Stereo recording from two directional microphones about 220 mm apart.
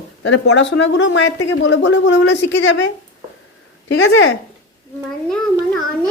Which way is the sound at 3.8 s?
65° left (ahead or behind).